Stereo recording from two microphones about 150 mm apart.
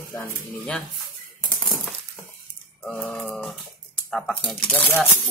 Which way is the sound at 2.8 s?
5° left (ahead or behind).